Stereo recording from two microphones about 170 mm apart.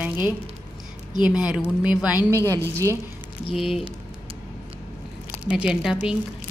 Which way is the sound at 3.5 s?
Centre (ahead or behind).